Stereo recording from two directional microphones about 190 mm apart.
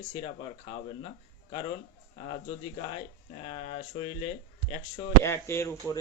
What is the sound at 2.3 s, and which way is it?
Speech, 30° left (ahead or behind).